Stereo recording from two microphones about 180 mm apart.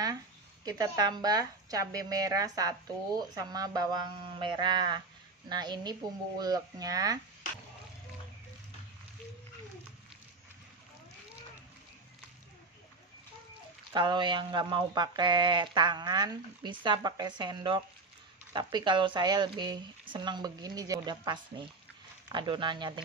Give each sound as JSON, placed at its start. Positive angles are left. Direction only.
{"t": 0.7, "sound": "speech", "side_deg": -20}
{"t": 13.9, "sound": "speech", "side_deg": -25}